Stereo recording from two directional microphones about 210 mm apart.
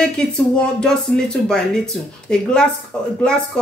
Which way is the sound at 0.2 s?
5° left (ahead or behind).